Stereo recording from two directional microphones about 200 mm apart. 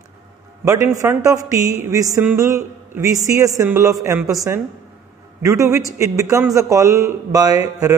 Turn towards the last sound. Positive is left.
turn(degrees=-15)  # may be behind; listen again after turning